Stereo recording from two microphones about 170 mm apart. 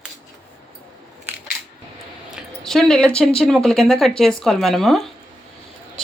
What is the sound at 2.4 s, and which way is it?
Speech, centre (ahead or behind).